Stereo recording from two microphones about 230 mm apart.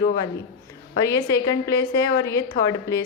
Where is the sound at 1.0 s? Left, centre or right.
Centre.